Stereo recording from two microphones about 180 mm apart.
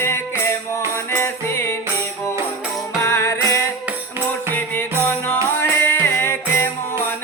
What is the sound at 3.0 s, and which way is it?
Music, 15° left (ahead or behind).